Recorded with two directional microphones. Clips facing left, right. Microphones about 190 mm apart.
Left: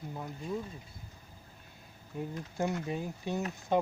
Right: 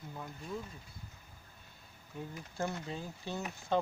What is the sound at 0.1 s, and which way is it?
Speech, 20° left (ahead or behind).